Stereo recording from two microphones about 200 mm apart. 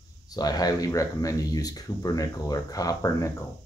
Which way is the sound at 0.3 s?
20° left (ahead or behind).